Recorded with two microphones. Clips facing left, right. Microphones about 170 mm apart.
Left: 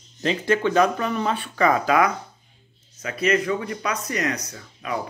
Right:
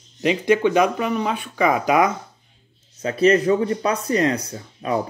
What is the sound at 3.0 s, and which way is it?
Speech, 30° right (ahead or behind).